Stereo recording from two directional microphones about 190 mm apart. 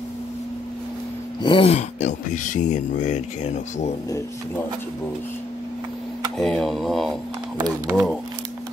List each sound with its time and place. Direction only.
1.4 s speech: 30° left (ahead or behind)
6.3 s speech: centre (ahead or behind)